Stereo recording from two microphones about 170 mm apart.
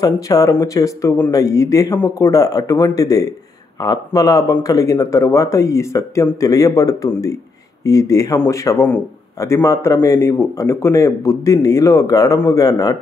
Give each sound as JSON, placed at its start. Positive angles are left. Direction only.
{"t": 0.0, "sound": "a man's voice", "side_deg": 20}